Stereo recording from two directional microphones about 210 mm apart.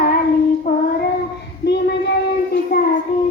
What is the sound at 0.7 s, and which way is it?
Child singing, 45° left (ahead or behind).